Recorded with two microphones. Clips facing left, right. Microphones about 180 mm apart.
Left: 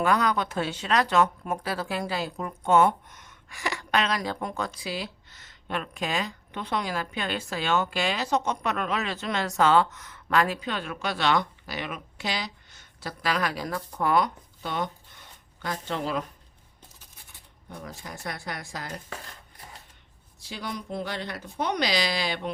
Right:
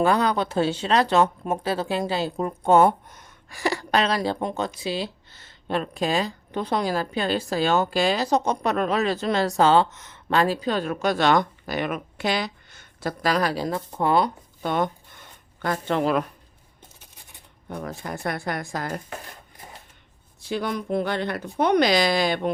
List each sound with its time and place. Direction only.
0.0 s speech: 30° right (ahead or behind)
14.6 s a sound: 50° right (ahead or behind)
17.7 s speech: 60° right (ahead or behind)
20.4 s speech: 55° right (ahead or behind)